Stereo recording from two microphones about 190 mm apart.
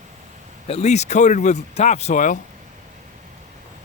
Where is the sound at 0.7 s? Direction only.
35° left (ahead or behind).